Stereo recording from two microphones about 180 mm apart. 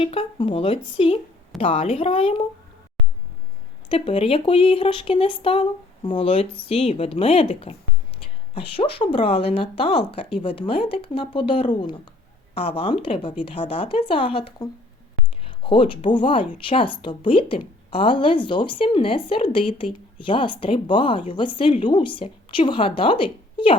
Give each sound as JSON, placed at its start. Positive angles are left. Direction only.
{"t": 0.0, "sound": "speech", "side_deg": 30}
{"t": 3.8, "sound": "a woman's voice", "side_deg": 30}